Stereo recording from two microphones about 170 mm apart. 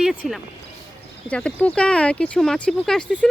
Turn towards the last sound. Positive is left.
turn(degrees=5)  # may be behind; listen again after turning